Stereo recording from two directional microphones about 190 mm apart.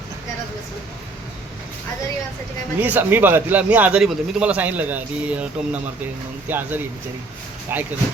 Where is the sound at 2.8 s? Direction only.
10° right (ahead or behind).